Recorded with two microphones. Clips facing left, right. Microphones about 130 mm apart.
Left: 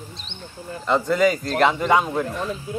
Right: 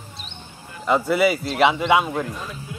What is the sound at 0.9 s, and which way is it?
A man's voice, 10° right (ahead or behind).